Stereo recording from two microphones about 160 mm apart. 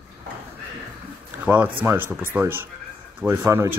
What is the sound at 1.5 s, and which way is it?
A man's voice, 5° right (ahead or behind).